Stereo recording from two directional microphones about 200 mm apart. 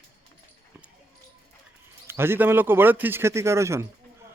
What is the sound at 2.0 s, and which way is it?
A man's voice, 10° right (ahead or behind).